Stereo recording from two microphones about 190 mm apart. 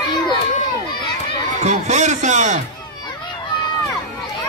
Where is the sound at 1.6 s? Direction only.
40° right (ahead or behind).